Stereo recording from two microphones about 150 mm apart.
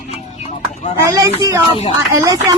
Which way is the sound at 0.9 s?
20° right (ahead or behind).